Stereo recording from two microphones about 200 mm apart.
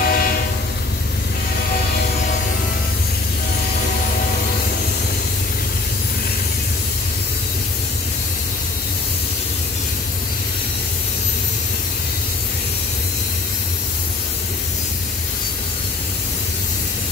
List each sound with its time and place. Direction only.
0.0 s train: 50° left (ahead or behind)